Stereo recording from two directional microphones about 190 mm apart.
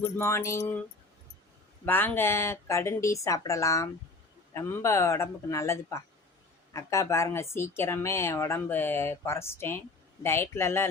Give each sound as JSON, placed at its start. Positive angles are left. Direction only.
{"t": 0.0, "sound": "speech", "side_deg": 15}
{"t": 1.8, "sound": "speech", "side_deg": 10}